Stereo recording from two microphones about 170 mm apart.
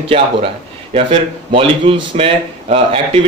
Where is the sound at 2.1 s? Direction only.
35° right (ahead or behind).